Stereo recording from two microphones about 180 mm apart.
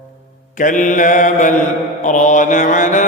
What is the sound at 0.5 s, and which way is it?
Mantra, 45° left (ahead or behind).